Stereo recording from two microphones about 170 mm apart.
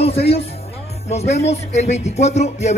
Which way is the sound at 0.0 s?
35° left (ahead or behind).